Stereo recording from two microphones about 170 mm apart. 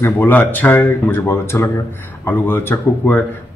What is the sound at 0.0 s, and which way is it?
A man's voice, 10° left (ahead or behind).